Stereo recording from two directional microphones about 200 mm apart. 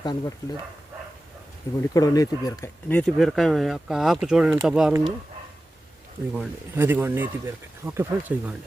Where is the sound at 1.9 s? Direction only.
15° left (ahead or behind); by 5.1 s 5° right (ahead or behind).